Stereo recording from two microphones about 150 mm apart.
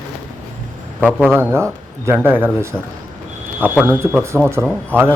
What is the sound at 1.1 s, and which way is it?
Speech, 5° left (ahead or behind).